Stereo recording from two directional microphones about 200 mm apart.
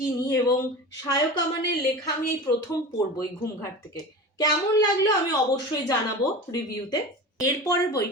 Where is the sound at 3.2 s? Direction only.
20° left (ahead or behind).